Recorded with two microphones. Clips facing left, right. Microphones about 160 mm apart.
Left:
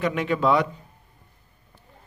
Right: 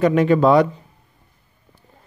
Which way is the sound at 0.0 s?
40° right (ahead or behind).